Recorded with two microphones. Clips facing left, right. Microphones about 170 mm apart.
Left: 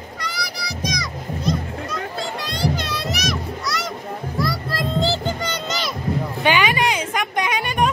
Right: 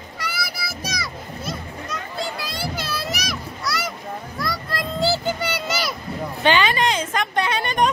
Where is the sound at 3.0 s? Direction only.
Centre (ahead or behind).